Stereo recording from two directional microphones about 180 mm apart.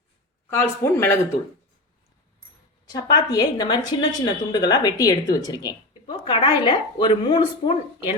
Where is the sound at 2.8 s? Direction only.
20° left (ahead or behind).